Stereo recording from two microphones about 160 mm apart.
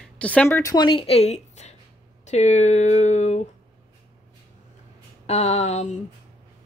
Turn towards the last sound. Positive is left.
turn(degrees=45)  # may be behind; listen again after turning